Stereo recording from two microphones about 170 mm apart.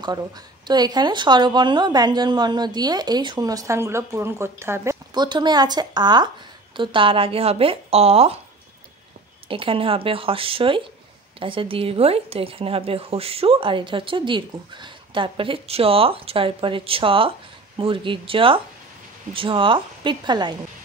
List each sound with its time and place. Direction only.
0.7 s a woman's voice: 25° right (ahead or behind)
5.1 s a woman's voice: 25° right (ahead or behind)
9.5 s a woman's voice: 30° right (ahead or behind)